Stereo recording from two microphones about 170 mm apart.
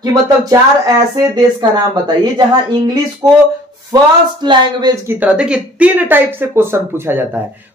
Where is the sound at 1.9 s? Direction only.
25° right (ahead or behind).